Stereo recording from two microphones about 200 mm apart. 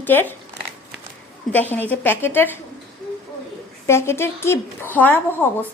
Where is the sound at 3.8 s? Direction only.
15° left (ahead or behind).